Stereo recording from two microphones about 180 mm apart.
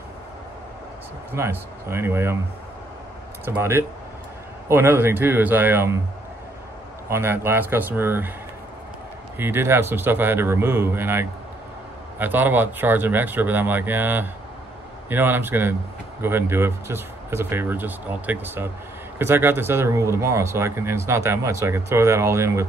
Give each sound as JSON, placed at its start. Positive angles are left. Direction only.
{"t": 1.3, "sound": "speech", "side_deg": -15}
{"t": 3.4, "sound": "speech", "side_deg": -10}
{"t": 7.1, "sound": "speech", "side_deg": -15}
{"t": 9.4, "sound": "speech", "side_deg": -15}